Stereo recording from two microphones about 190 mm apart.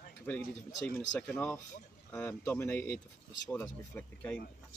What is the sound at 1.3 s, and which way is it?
Speech, 10° left (ahead or behind).